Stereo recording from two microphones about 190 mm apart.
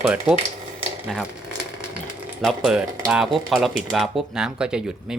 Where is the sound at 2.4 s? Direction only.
Centre (ahead or behind).